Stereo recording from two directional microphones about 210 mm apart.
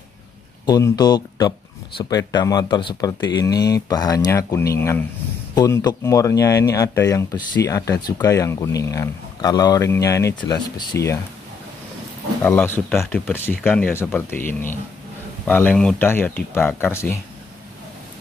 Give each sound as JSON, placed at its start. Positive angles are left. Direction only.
{"t": 0.7, "sound": "speech", "side_deg": 15}
{"t": 12.4, "sound": "speech", "side_deg": 10}